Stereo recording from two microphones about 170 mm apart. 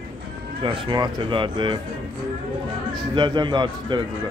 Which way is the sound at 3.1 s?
25° right (ahead or behind).